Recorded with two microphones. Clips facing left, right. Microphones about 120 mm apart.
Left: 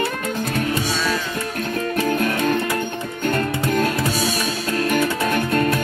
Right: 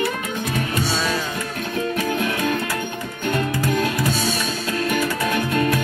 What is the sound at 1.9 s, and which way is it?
Music, 45° left (ahead or behind).